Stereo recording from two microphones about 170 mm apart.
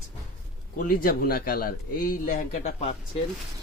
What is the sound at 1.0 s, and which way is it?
Speech, 60° left (ahead or behind).